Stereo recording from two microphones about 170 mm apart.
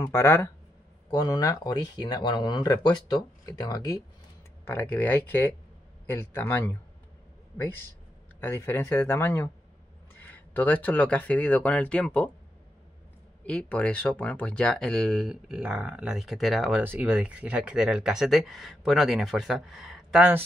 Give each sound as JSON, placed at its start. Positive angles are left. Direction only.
{"t": 0.0, "sound": "speech", "side_deg": 15}
{"t": 8.4, "sound": "speech", "side_deg": 10}
{"t": 13.5, "sound": "speech", "side_deg": 5}